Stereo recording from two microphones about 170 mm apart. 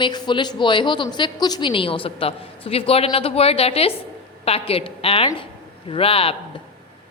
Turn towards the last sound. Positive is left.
turn(degrees=35)  # may be behind; listen again after turning